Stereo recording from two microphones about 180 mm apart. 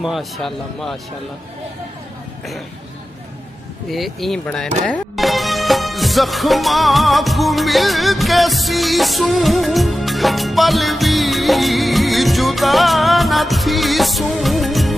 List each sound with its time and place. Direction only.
0.0 s speech: centre (ahead or behind)
3.9 s speech: centre (ahead or behind)
4.8 s music: 5° left (ahead or behind)